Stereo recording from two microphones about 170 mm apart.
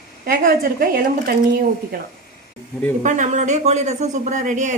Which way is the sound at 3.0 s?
45° right (ahead or behind).